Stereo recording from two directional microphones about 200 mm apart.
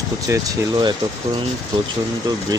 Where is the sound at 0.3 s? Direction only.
20° right (ahead or behind).